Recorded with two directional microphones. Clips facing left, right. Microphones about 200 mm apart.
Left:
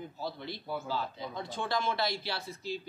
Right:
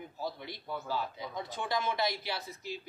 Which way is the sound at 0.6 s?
5° left (ahead or behind).